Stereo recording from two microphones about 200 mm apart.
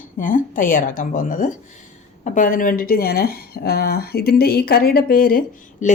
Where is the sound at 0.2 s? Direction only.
40° left (ahead or behind).